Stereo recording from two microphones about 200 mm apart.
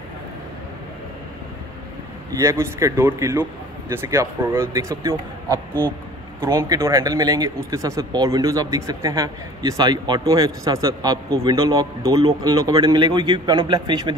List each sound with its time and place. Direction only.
2.4 s a man's voice: 15° right (ahead or behind)